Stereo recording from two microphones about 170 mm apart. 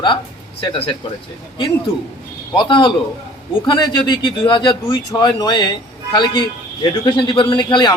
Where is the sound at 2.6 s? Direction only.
30° left (ahead or behind).